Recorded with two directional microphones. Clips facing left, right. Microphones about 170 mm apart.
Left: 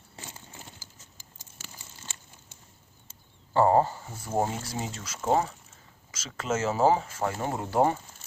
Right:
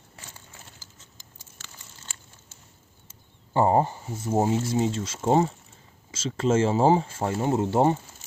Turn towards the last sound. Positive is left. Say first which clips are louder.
# right 4 dB
turn(degrees=-25)  # may be behind; listen again after turning